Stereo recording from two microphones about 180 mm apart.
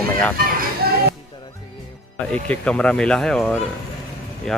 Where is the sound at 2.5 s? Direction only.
5° left (ahead or behind).